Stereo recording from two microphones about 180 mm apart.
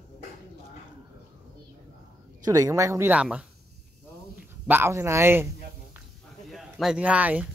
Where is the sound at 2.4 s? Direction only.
20° right (ahead or behind).